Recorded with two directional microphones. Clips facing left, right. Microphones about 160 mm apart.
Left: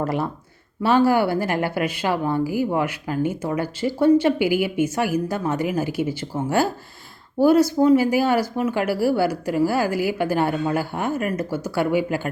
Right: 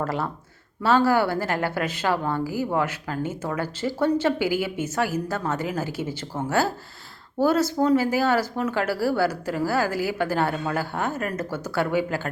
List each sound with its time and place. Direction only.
0.0 s speech: 15° left (ahead or behind)